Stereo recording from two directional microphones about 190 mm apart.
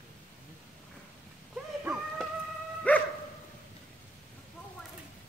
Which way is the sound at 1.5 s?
5° right (ahead or behind).